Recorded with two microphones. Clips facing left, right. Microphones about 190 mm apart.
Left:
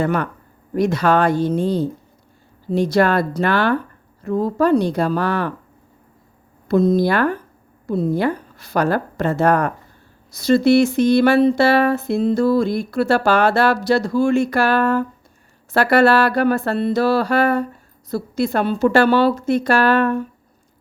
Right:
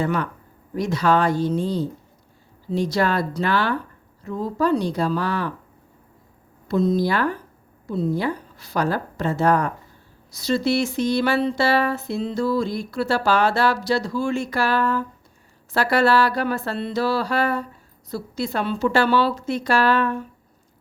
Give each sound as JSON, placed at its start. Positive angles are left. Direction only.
{"t": 0.0, "sound": "speech", "side_deg": 55}
{"t": 6.7, "sound": "speech", "side_deg": 55}